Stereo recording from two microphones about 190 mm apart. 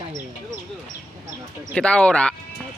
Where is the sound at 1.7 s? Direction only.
5° left (ahead or behind).